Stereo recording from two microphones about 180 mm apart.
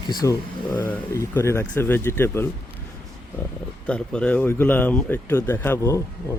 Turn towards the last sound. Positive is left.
turn(degrees=15)  # may be behind; listen again after turning